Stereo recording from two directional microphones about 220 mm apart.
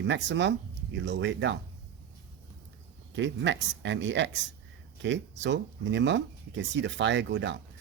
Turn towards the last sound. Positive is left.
turn(degrees=-55)  # may be behind; listen again after turning